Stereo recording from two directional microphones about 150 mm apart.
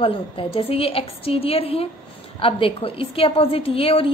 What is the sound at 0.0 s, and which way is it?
A woman's voice, 40° left (ahead or behind).